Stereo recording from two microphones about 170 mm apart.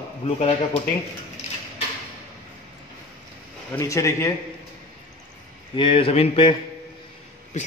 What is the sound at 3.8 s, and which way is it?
Speech, 15° left (ahead or behind).